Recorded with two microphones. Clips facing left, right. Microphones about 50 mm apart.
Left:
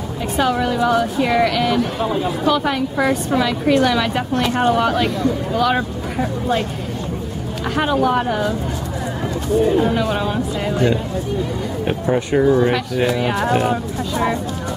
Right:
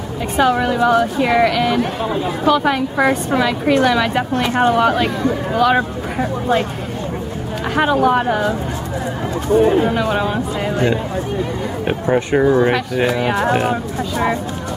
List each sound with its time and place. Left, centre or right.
0.4 s speech: centre
7.6 s speech: centre
9.8 s speech: centre